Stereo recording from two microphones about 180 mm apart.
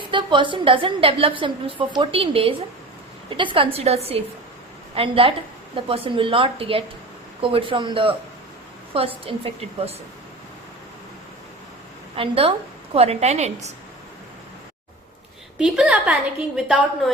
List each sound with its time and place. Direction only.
0.1 s a woman's voice: 25° right (ahead or behind)
12.1 s a woman's voice: 30° right (ahead or behind)
15.5 s a woman's voice: 5° right (ahead or behind)